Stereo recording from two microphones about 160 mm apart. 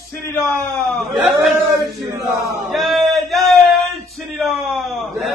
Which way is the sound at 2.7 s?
Centre (ahead or behind).